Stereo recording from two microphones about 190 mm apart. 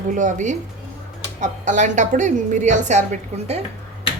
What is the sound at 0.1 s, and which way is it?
A woman's voice, 40° right (ahead or behind).